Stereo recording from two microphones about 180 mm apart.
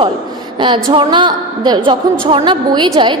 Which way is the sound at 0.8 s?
25° right (ahead or behind).